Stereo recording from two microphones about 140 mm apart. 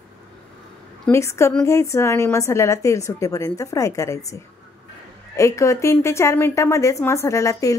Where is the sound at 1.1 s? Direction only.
20° left (ahead or behind).